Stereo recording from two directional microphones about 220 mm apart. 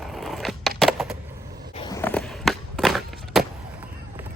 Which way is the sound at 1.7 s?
20° left (ahead or behind).